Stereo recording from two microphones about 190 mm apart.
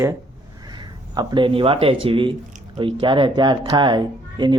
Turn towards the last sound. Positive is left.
turn(degrees=-25)  # may be behind; listen again after turning